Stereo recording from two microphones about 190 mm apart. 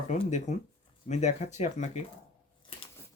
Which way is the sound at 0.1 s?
40° left (ahead or behind).